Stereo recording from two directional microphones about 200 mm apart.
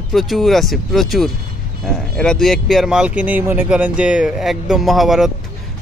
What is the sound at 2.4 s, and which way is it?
Speech, centre (ahead or behind).